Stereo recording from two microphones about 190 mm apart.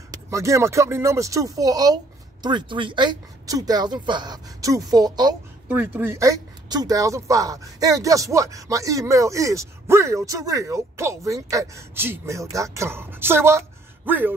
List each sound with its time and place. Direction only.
0.1 s speech: 15° right (ahead or behind)
5.7 s speech: 10° right (ahead or behind)